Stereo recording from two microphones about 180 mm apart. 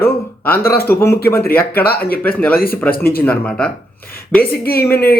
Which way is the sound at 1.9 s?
55° left (ahead or behind).